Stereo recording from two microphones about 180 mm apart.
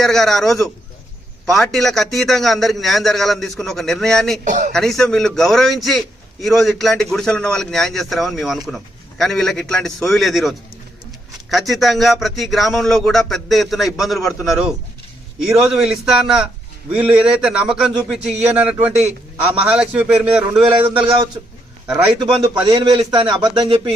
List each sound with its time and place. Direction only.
0.0 s a man's voice: centre (ahead or behind)
4.4 s speech: 45° right (ahead or behind)
4.7 s a man's voice: centre (ahead or behind)
11.5 s a man's voice: centre (ahead or behind)
22.6 s a man's voice: 25° right (ahead or behind)